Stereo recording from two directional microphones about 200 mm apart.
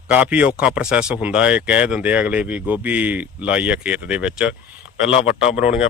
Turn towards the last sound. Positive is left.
turn(degrees=35)  # may be behind; listen again after turning